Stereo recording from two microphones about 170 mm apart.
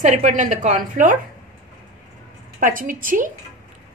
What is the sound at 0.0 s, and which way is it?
Speech, 45° right (ahead or behind).